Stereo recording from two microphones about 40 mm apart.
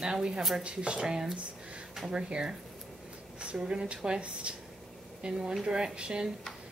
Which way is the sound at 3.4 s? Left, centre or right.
Right.